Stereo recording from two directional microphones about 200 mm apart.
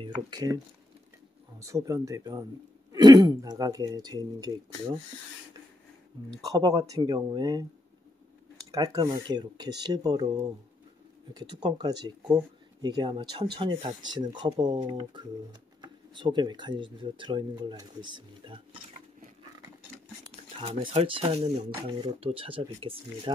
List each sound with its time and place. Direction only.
0.0 s speech: 20° right (ahead or behind)
1.6 s speech: 15° right (ahead or behind)
6.4 s speech: 15° right (ahead or behind)
8.7 s speech: 20° right (ahead or behind)
11.3 s speech: 20° right (ahead or behind)
20.6 s speech: 30° right (ahead or behind)